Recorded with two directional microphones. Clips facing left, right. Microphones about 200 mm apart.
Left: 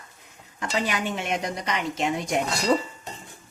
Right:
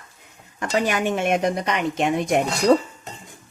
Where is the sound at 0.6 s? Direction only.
50° right (ahead or behind).